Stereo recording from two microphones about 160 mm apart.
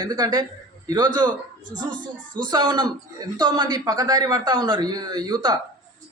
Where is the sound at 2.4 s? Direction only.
25° right (ahead or behind).